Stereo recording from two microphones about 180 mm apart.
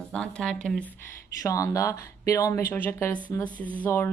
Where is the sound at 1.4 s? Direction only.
15° left (ahead or behind).